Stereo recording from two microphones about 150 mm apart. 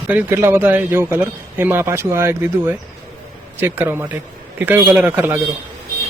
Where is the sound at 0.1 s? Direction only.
10° right (ahead or behind).